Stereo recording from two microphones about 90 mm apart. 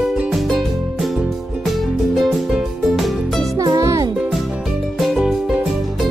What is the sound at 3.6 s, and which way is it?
Music, 40° right (ahead or behind).